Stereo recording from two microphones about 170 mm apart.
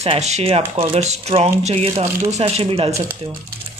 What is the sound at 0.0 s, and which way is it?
Speech, 40° right (ahead or behind).